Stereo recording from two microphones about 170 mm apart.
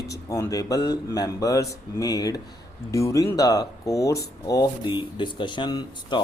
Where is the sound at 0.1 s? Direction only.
20° left (ahead or behind).